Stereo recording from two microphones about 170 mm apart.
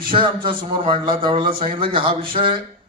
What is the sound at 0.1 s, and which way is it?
A man's voice, 30° right (ahead or behind).